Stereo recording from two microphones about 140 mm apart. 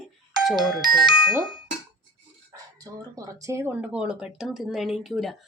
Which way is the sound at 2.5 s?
25° right (ahead or behind).